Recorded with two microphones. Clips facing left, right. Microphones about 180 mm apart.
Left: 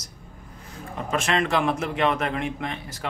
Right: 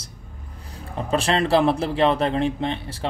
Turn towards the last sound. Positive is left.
turn(degrees=-30)  # may be behind; listen again after turning